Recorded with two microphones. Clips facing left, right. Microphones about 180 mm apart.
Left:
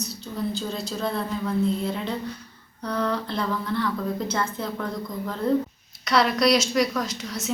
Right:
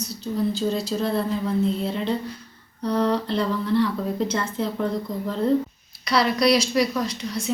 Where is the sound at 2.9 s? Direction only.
30° right (ahead or behind).